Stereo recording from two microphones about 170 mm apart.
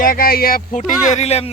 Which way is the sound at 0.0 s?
55° left (ahead or behind).